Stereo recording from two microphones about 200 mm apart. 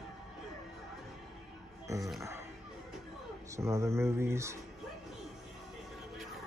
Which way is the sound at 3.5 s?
15° right (ahead or behind).